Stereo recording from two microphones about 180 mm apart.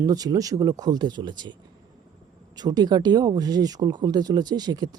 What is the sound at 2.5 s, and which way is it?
Speech, 20° right (ahead or behind).